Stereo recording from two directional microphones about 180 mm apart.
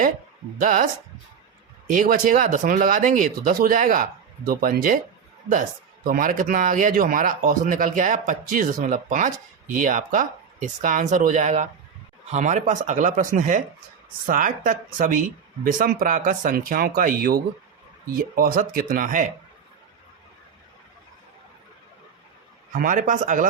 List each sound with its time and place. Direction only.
0.6 s speech: 50° right (ahead or behind)
2.0 s speech: 50° right (ahead or behind)
6.1 s speech: 50° right (ahead or behind)
22.7 s speech: 45° right (ahead or behind)